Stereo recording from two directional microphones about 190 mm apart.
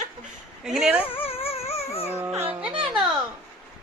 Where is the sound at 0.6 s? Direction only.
Centre (ahead or behind).